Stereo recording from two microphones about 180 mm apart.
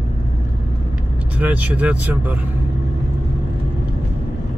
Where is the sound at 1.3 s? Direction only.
10° right (ahead or behind).